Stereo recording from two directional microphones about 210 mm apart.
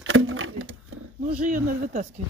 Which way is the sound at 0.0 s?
70° right (ahead or behind).